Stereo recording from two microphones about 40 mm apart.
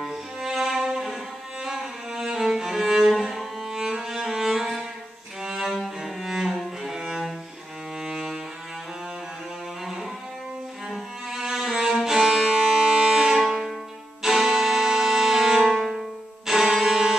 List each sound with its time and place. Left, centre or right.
0.4 s music: centre
5.4 s cello: centre
8.1 s music: centre
11.3 s cello: centre
11.9 s music: centre
13.5 s music: centre
14.2 s music: centre